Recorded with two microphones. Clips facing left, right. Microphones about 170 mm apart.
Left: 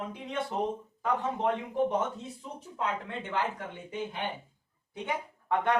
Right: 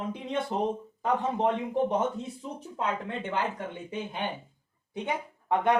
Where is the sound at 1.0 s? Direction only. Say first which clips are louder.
Right 3 dB; 20° right (ahead or behind).